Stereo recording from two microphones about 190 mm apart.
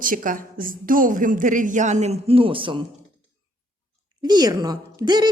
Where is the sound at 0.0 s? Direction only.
45° right (ahead or behind); by 2.8 s 25° right (ahead or behind).